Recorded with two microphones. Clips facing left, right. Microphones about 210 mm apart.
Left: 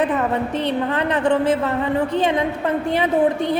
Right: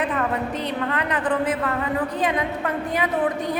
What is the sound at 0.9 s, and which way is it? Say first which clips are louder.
A woman's voice: left 4 dB; 25° left (ahead or behind).